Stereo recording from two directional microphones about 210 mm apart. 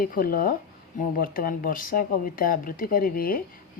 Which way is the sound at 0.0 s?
45° left (ahead or behind).